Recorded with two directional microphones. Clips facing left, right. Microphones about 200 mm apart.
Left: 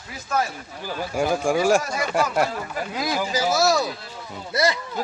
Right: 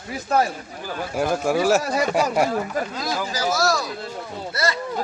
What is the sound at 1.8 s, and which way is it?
Speech, 35° right (ahead or behind).